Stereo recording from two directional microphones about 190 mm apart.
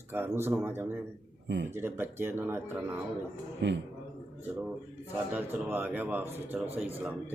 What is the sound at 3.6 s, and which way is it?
Speech, 70° right (ahead or behind).